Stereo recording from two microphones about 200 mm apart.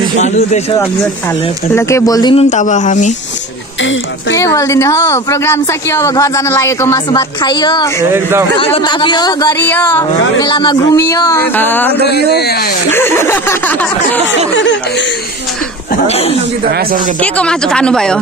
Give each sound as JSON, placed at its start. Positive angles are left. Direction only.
{"t": 0.2, "sound": "a man's voice", "side_deg": 35}
{"t": 1.8, "sound": "a woman's voice", "side_deg": 15}
{"t": 2.3, "sound": "a man's voice", "side_deg": 35}
{"t": 4.4, "sound": "a woman's voice", "side_deg": 15}
{"t": 8.1, "sound": "speech", "side_deg": -10}
{"t": 8.5, "sound": "speech", "side_deg": 25}
{"t": 9.6, "sound": "a woman's voice", "side_deg": 10}
{"t": 10.4, "sound": "a woman's voice", "side_deg": 20}
{"t": 12.0, "sound": "speech", "side_deg": 55}
{"t": 12.9, "sound": "a woman's voice", "side_deg": 10}
{"t": 14.5, "sound": "speech", "side_deg": 65}
{"t": 16.1, "sound": "a man's voice", "side_deg": 30}
{"t": 17.2, "sound": "speech", "side_deg": 5}